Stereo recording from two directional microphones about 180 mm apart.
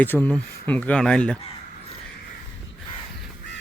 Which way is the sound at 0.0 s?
10° left (ahead or behind).